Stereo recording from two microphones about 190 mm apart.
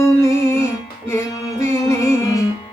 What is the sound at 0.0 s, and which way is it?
Music, 15° left (ahead or behind).